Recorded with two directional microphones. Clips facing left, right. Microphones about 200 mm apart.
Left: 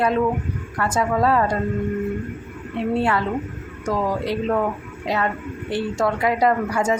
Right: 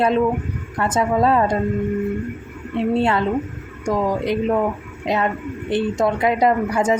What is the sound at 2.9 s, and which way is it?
Speech, 25° right (ahead or behind).